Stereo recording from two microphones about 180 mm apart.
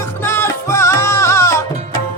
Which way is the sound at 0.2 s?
15° left (ahead or behind).